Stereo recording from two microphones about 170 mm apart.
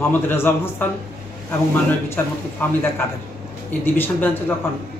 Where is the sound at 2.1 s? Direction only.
15° left (ahead or behind).